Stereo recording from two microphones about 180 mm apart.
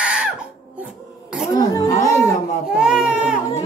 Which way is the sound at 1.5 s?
20° left (ahead or behind).